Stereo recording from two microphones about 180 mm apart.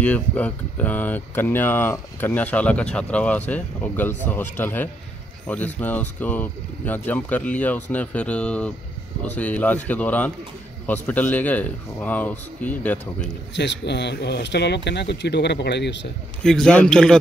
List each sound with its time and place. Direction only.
0.0 s speech: 10° left (ahead or behind)
13.6 s speech: 70° left (ahead or behind)
16.4 s speech: 5° left (ahead or behind)